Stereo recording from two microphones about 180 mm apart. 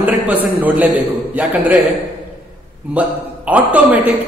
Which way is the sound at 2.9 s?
10° right (ahead or behind).